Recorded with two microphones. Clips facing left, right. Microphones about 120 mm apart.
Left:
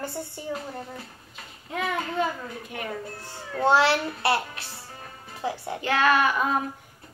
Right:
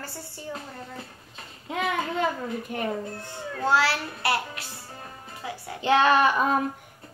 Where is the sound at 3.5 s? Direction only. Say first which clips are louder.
Left 3 dB; 25° left (ahead or behind).